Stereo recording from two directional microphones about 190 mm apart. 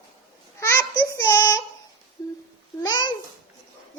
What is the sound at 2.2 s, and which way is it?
Humming, 20° left (ahead or behind).